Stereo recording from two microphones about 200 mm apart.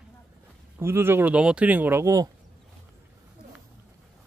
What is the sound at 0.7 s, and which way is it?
Speech, 10° right (ahead or behind).